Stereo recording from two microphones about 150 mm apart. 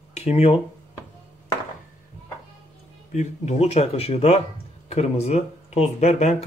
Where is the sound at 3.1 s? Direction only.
50° left (ahead or behind).